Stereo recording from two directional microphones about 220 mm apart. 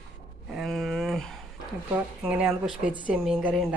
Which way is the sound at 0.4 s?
Centre (ahead or behind).